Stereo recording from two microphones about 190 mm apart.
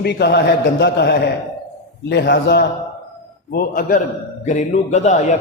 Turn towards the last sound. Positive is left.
turn(degrees=40)  # may be behind; listen again after turning